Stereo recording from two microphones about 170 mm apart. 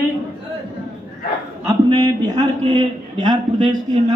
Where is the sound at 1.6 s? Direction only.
20° right (ahead or behind).